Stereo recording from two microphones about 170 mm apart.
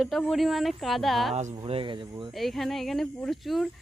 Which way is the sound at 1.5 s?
30° right (ahead or behind).